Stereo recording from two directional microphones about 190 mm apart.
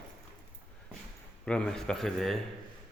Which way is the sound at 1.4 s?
5° left (ahead or behind).